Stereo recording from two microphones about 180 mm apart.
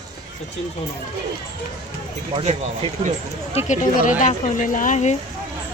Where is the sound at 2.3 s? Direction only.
30° right (ahead or behind).